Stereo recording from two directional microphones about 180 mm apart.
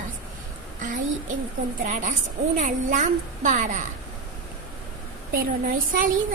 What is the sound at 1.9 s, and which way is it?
A woman's voice, 45° right (ahead or behind).